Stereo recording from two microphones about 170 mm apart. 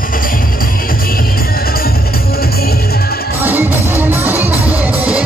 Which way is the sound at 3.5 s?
10° right (ahead or behind).